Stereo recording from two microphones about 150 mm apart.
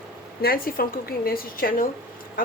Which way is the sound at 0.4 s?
80° left.